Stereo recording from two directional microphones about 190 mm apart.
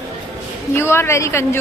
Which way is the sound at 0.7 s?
15° left (ahead or behind).